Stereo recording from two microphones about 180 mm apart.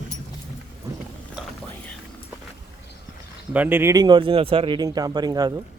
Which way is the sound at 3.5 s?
10° right (ahead or behind).